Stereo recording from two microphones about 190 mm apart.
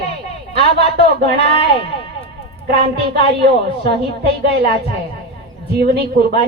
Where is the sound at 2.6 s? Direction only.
55° right (ahead or behind).